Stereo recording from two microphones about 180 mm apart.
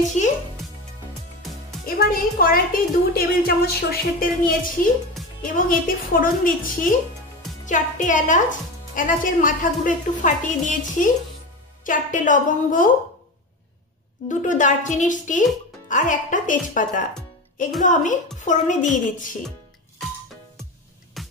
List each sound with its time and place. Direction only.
2.0 s speech: 55° left (ahead or behind)
14.4 s speech: 45° left (ahead or behind)
21.2 s music: centre (ahead or behind)